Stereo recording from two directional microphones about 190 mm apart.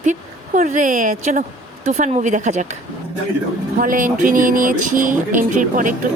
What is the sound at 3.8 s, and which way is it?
Speech, 45° right (ahead or behind).